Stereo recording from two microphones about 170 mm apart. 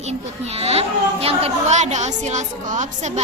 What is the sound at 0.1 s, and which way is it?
A woman's voice, 35° right (ahead or behind).